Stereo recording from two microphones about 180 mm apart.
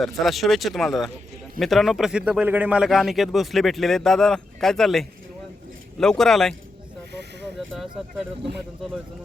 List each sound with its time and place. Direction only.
0.0 s a man's voice: centre (ahead or behind)
7.1 s snake: 70° right (ahead or behind)
7.8 s a man's voice: centre (ahead or behind)